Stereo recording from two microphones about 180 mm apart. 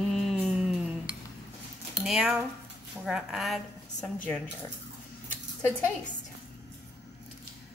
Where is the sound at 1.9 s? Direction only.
5° right (ahead or behind).